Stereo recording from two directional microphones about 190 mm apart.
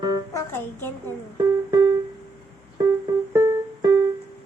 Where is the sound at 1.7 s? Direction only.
20° right (ahead or behind).